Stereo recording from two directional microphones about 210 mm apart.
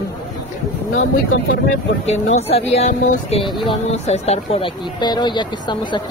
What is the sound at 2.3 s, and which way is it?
Speech, 30° left (ahead or behind).